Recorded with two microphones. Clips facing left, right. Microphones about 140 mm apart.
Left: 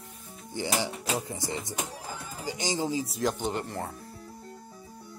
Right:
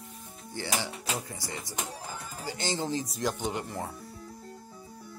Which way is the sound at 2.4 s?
15° left (ahead or behind).